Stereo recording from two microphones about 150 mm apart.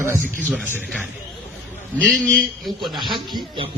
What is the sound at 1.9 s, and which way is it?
A man's voice, 10° left (ahead or behind).